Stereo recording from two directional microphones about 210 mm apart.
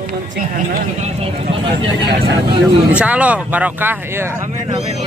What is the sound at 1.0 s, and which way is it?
Speech, 25° right (ahead or behind).